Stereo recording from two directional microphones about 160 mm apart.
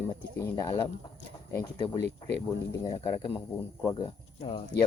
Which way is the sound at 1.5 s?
20° left (ahead or behind).